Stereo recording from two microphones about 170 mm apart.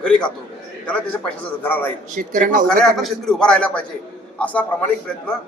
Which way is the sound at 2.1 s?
50° right (ahead or behind).